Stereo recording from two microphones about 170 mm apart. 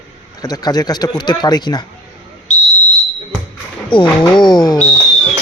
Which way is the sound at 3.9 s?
30° left (ahead or behind).